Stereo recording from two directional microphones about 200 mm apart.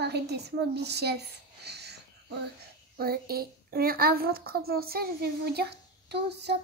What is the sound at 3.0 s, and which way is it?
A woman's voice, 50° right (ahead or behind).